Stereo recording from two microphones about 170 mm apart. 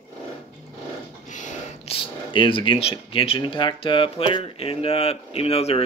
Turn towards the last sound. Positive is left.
turn(degrees=35)  # may be behind; listen again after turning